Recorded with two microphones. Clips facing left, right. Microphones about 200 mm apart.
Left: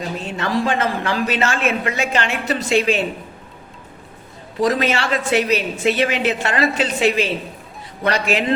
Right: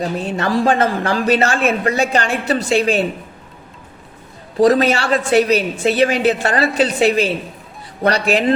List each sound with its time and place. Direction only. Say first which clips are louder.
0.3 s a man's voice: right 4 dB; 35° right (ahead or behind)
4.6 s a man's voice: right 5 dB; 35° right (ahead or behind)